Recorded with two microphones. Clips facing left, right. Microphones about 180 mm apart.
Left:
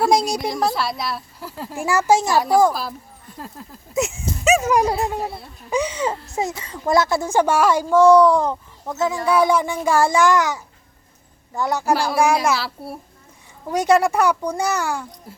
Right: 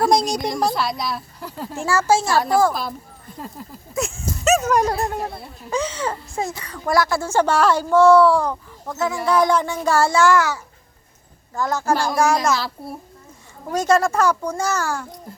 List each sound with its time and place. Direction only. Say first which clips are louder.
0.0 s a woman's voice: even; 5° left (ahead or behind)
1.8 s speech: left 1 dB; 15° left (ahead or behind)
3.3 s a woman's voice: right 2 dB; centre (ahead or behind)
3.9 s dog: left 3 dB; 20° left (ahead or behind)
4.6 s a woman's voice: left 1 dB; 10° left (ahead or behind)
5.7 s speech: left 2 dB; 15° left (ahead or behind)